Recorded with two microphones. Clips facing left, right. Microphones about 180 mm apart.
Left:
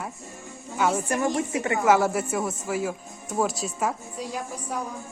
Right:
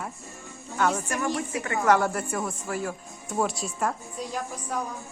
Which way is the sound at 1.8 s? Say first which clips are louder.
Left 1 dB; 5° left (ahead or behind).